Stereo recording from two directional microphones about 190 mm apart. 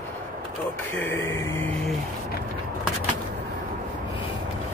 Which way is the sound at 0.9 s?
10° left (ahead or behind).